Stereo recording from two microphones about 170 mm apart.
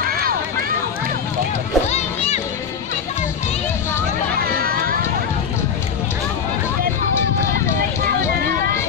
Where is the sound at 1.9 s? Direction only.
40° left (ahead or behind).